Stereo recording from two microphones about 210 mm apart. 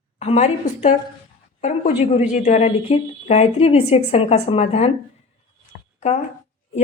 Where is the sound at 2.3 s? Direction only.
35° left (ahead or behind).